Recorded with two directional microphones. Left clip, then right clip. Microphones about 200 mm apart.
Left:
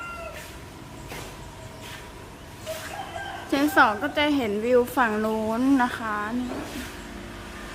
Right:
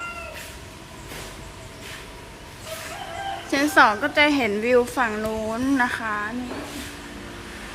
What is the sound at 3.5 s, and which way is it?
A woman's voice, 15° left (ahead or behind).